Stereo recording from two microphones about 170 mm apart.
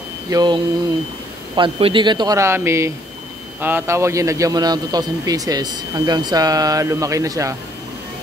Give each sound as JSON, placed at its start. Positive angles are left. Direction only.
{"t": 0.3, "sound": "a man's voice", "side_deg": -25}